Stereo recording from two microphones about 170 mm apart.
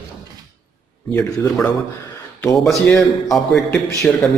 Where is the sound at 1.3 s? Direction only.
15° left (ahead or behind).